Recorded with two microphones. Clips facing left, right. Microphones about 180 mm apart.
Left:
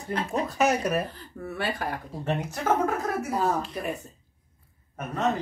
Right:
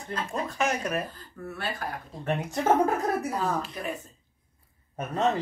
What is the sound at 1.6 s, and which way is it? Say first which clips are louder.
Speech: left 4 dB; 65° left (ahead or behind).